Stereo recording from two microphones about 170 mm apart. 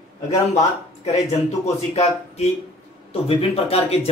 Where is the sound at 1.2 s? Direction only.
40° left (ahead or behind).